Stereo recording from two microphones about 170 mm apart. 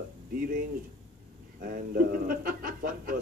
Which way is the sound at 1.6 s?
55° right (ahead or behind).